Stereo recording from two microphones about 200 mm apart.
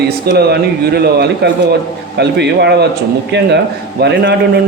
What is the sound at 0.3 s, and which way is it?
A man's voice, 55° right (ahead or behind).